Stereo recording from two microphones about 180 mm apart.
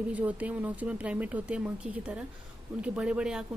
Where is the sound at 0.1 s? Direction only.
10° right (ahead or behind).